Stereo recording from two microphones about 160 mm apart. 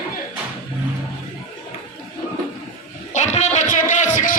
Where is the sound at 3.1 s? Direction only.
45° left (ahead or behind).